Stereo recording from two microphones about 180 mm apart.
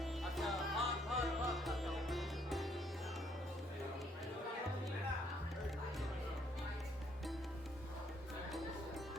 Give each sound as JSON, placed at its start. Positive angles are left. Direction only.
{"t": 0.0, "sound": "music", "side_deg": 0}